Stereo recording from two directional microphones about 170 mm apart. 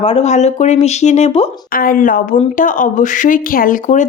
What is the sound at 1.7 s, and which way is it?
Speech, 55° left (ahead or behind).